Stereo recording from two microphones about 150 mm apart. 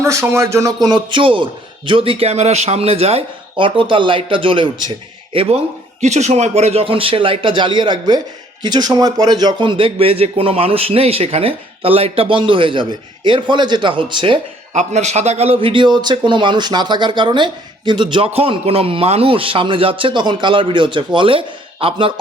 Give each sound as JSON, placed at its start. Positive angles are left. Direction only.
{"t": 0.0, "sound": "speech", "side_deg": -20}
{"t": 0.9, "sound": "a man's voice", "side_deg": -30}
{"t": 6.0, "sound": "a man's voice", "side_deg": -50}
{"t": 14.7, "sound": "a man's voice", "side_deg": -50}